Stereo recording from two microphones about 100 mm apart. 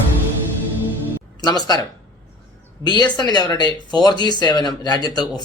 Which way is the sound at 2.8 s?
45° left (ahead or behind).